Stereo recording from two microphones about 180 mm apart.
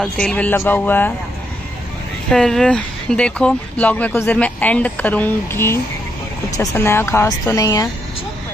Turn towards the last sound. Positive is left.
turn(degrees=15)  # may be behind; listen again after turning